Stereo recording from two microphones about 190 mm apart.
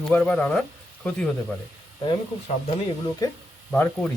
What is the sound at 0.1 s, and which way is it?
Speech, 5° left (ahead or behind).